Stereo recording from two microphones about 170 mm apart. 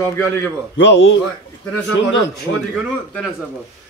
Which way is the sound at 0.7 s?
90° left.